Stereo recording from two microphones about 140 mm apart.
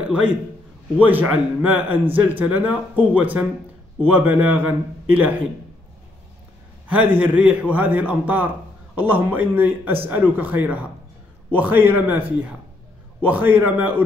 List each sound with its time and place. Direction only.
0.1 s speech: 10° right (ahead or behind)
6.9 s speech: 10° right (ahead or behind)